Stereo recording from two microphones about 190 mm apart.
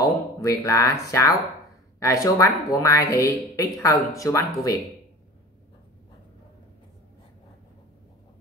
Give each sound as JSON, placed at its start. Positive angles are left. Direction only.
{"t": 0.0, "sound": "speech", "side_deg": 15}